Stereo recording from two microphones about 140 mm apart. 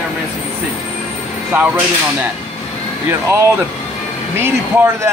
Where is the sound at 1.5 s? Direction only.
10° right (ahead or behind).